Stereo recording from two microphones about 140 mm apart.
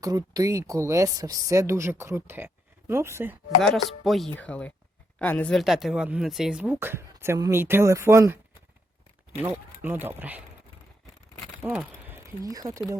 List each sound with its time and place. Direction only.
0.0 s speech: 25° right (ahead or behind)
3.6 s speech: centre (ahead or behind); by 8.4 s 20° right (ahead or behind)
9.8 s speech: 15° right (ahead or behind)
11.6 s a sound: 10° right (ahead or behind)
12.4 s speech: 25° right (ahead or behind)